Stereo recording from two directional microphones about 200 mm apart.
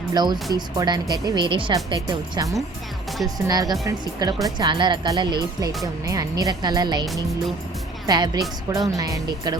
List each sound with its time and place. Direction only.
0.1 s speech: 20° right (ahead or behind)
7.0 s speech: centre (ahead or behind)
8.0 s speech: 20° right (ahead or behind)